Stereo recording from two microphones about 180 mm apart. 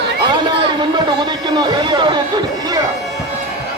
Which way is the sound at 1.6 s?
25° right (ahead or behind).